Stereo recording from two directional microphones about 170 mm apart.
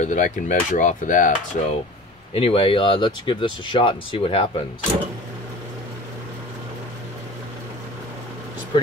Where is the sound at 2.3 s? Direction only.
35° left (ahead or behind).